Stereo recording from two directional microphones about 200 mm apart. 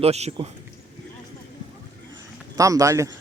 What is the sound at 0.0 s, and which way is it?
Speech, 30° right (ahead or behind).